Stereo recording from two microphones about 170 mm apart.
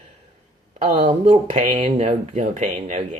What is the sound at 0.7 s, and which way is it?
Speech, 45° right (ahead or behind).